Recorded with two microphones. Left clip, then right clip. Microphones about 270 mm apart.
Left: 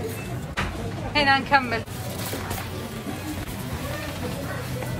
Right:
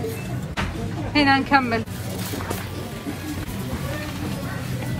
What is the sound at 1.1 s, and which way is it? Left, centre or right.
Speech, centre.